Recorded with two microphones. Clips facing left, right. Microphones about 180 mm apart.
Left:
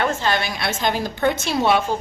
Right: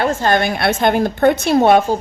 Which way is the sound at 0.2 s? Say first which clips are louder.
Right 7 dB; 50° right (ahead or behind).